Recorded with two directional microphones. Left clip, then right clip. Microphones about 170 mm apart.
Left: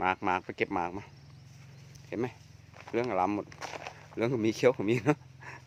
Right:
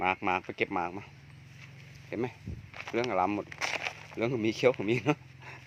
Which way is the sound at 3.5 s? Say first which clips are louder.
Right 7 dB; 40° right (ahead or behind).